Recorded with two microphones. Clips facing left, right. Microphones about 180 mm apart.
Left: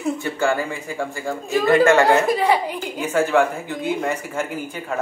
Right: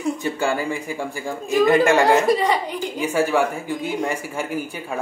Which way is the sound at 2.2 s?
5° left (ahead or behind).